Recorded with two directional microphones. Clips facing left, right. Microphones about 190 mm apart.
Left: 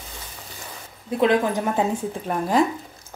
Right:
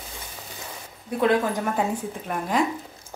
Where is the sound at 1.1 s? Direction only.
20° left (ahead or behind).